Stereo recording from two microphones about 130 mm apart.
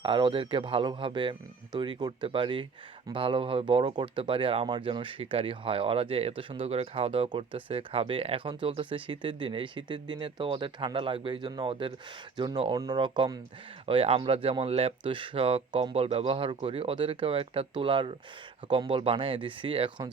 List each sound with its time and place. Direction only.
0.0 s speech: 40° right (ahead or behind)
12.6 s speech: 30° right (ahead or behind)
13.8 s speech: 45° right (ahead or behind)